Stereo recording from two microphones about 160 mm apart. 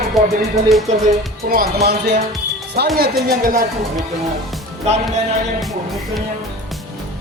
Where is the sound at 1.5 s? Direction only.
70° right (ahead or behind).